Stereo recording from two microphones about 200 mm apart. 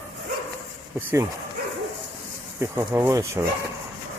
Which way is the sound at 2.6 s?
10° right (ahead or behind).